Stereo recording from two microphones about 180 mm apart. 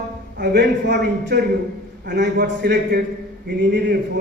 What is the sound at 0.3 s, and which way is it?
A man's voice, 70° right (ahead or behind).